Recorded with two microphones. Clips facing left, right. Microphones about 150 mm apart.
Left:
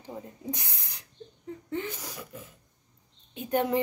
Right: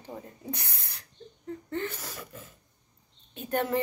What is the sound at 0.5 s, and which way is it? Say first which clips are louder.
Owl: even; 15° left (ahead or behind).